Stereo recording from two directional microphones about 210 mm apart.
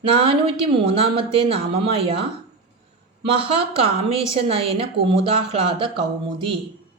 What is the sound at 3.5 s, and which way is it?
Speech, 25° right (ahead or behind).